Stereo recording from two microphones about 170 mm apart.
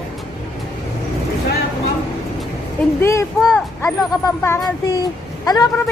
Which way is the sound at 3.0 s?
15° left (ahead or behind).